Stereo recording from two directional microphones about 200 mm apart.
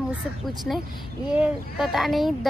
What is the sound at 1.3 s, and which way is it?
A child's voice, 5° right (ahead or behind).